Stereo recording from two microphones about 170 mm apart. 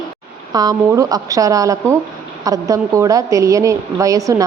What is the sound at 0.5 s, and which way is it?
A woman's voice, 20° right (ahead or behind).